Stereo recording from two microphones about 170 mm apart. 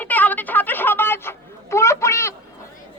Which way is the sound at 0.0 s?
10° left (ahead or behind).